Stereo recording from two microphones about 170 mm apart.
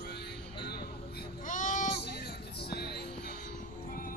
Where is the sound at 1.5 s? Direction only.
50° left (ahead or behind).